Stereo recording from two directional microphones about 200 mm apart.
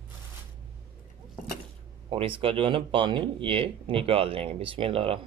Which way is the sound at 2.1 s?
25° right (ahead or behind).